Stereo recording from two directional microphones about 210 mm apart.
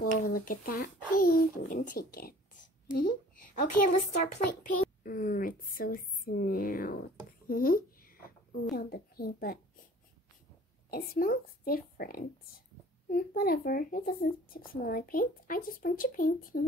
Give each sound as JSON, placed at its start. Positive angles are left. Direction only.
{"t": 0.0, "sound": "speech", "side_deg": 45}
{"t": 5.0, "sound": "speech", "side_deg": 40}
{"t": 7.4, "sound": "a sound", "side_deg": 45}
{"t": 8.7, "sound": "speech", "side_deg": 45}
{"t": 10.9, "sound": "speech", "side_deg": 45}